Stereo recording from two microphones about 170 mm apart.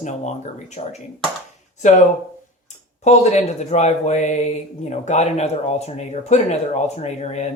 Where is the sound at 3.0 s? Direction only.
40° left (ahead or behind).